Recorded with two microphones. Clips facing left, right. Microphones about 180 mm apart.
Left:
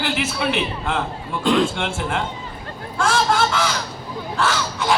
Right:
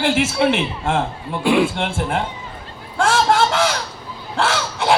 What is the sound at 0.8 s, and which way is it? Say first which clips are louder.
Speech: right 4 dB; 45° right (ahead or behind).